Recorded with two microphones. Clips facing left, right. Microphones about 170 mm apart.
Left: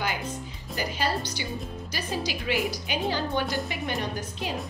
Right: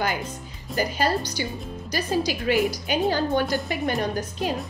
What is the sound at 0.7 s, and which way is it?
A woman's voice, 45° right (ahead or behind).